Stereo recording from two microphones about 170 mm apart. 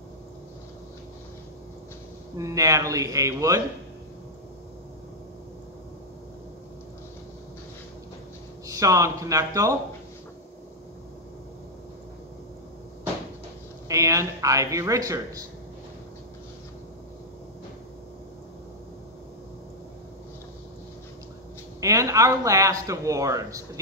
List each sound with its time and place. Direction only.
2.3 s speech: 20° right (ahead or behind)
8.6 s speech: 20° right (ahead or behind)
13.8 s speech: 20° right (ahead or behind)
21.7 s speech: 20° right (ahead or behind)